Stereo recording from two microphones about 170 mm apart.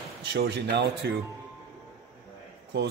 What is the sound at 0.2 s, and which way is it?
Speech, 90° right.